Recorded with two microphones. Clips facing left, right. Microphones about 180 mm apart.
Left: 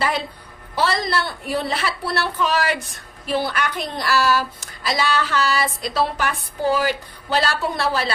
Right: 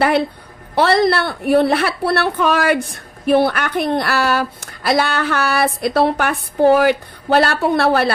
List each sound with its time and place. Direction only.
0.0 s a woman's voice: 60° right (ahead or behind)